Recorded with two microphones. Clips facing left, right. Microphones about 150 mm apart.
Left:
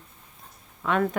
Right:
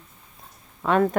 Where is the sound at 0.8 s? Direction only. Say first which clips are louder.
Right 4 dB; 35° right (ahead or behind).